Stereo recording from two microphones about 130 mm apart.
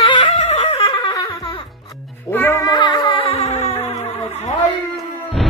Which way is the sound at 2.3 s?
15° left (ahead or behind).